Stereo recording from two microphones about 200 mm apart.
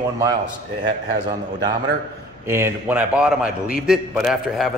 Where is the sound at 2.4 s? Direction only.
10° right (ahead or behind).